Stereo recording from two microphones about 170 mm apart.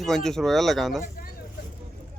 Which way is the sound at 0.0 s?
Centre (ahead or behind).